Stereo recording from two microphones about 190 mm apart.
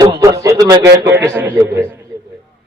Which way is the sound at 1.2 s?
10° right (ahead or behind).